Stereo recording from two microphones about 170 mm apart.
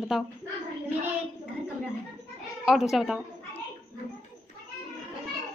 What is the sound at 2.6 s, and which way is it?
Speech, centre (ahead or behind).